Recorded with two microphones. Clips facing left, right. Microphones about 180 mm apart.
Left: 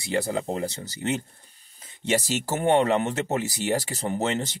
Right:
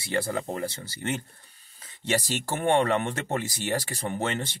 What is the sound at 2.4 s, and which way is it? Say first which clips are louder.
Speech: left 2 dB; 10° left (ahead or behind).